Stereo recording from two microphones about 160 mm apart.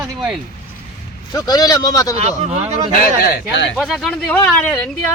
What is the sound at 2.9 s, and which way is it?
Speech, 70° left (ahead or behind).